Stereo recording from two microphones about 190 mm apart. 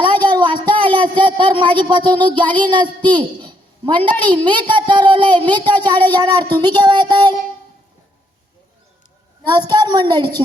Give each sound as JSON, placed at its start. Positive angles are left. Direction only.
{"t": 0.0, "sound": "a sound", "side_deg": -25}
{"t": 4.4, "sound": "speech", "side_deg": -25}
{"t": 9.6, "sound": "speech", "side_deg": -20}